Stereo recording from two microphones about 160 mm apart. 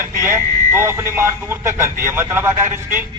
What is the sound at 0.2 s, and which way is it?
A man's voice, 15° right (ahead or behind).